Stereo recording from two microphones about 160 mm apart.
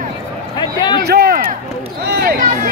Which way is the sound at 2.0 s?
80° right.